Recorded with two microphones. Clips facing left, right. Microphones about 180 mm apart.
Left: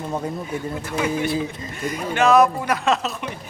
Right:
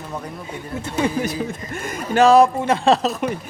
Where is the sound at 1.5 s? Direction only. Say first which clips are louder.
Even; 50° right (ahead or behind).